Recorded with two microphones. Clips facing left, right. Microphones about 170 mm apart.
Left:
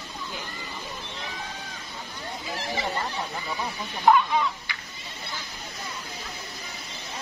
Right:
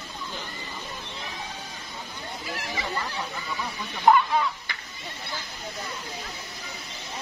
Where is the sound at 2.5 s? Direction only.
30° left (ahead or behind).